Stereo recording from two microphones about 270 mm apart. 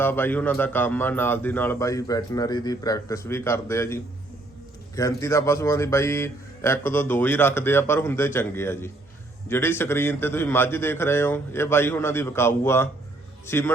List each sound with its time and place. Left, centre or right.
0.0 s a man's voice: centre